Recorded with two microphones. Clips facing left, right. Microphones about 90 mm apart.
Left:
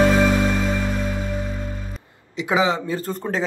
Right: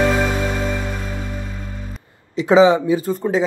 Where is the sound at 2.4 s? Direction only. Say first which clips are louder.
Right 8 dB; 25° right (ahead or behind); by 3.4 s 5° right (ahead or behind).